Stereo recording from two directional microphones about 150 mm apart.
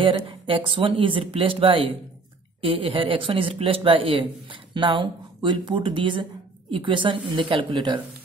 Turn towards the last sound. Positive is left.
turn(degrees=-30)  # may be behind; listen again after turning